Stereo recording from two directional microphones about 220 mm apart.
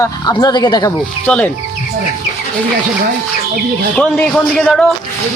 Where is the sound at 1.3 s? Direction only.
5° left (ahead or behind).